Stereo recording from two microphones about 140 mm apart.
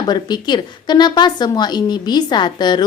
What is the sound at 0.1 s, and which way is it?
A woman's voice, 30° left (ahead or behind).